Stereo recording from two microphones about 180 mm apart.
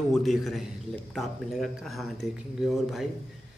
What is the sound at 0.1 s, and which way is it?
Speech, centre (ahead or behind).